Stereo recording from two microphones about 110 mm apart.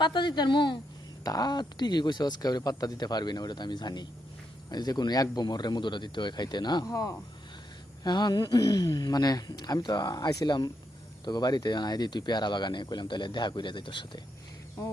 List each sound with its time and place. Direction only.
0.0 s speech: 45° left (ahead or behind)